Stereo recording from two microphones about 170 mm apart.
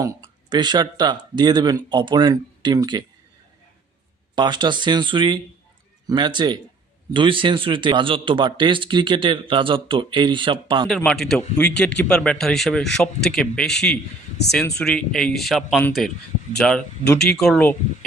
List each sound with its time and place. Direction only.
0.0 s a man's voice: 25° right (ahead or behind)
4.4 s a man's voice: 25° right (ahead or behind)
10.8 s speech: 5° left (ahead or behind)